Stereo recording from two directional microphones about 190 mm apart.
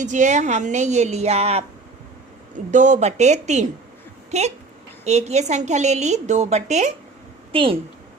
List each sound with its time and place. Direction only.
0.0 s a woman's voice: 40° right (ahead or behind)
2.7 s a woman's voice: 40° right (ahead or behind)
7.5 s a woman's voice: 25° right (ahead or behind)